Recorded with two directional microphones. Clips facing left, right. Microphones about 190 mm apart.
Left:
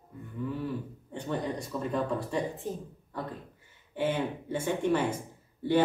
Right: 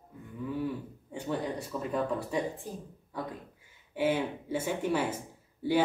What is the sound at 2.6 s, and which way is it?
Speech, 20° left (ahead or behind).